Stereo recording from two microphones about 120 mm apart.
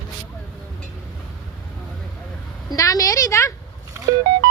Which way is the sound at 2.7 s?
30° left (ahead or behind).